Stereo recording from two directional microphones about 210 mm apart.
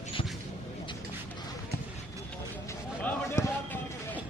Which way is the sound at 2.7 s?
10° left (ahead or behind).